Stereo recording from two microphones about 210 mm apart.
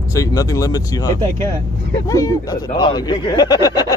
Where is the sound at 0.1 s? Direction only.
15° left (ahead or behind).